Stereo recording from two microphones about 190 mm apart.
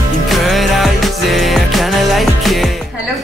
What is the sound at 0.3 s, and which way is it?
Music, centre (ahead or behind).